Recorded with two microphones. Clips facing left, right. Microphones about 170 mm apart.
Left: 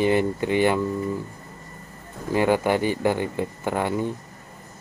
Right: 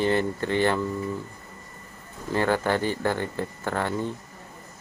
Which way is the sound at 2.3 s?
15° left (ahead or behind).